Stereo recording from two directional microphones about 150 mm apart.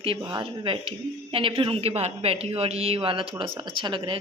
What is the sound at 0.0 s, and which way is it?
Speech, 35° right (ahead or behind).